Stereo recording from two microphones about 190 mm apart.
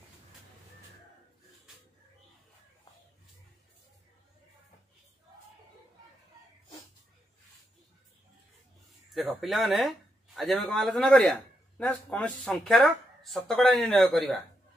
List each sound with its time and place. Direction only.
9.1 s speech: centre (ahead or behind)